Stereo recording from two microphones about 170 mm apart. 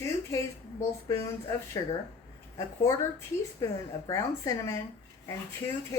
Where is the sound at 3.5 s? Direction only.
20° left (ahead or behind).